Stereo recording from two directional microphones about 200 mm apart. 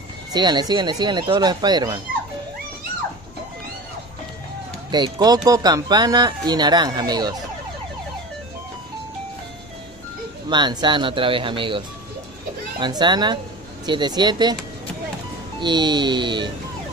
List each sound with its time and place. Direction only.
0.3 s speech: 20° right (ahead or behind)
4.9 s speech: 20° right (ahead or behind)
10.5 s speech: 25° right (ahead or behind)
12.8 s speech: 20° right (ahead or behind)
15.6 s speech: 20° right (ahead or behind)